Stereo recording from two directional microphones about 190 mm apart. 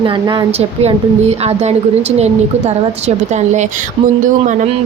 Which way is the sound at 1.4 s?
35° right (ahead or behind).